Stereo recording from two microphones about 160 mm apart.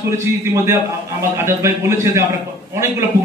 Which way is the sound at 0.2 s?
15° right (ahead or behind).